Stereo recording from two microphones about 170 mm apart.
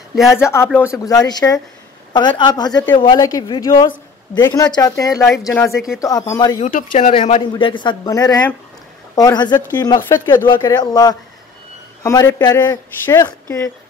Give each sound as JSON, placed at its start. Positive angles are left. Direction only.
{"t": 0.3, "sound": "speech", "side_deg": 15}
{"t": 6.6, "sound": "speech", "side_deg": 45}
{"t": 7.2, "sound": "a man's voice", "side_deg": 35}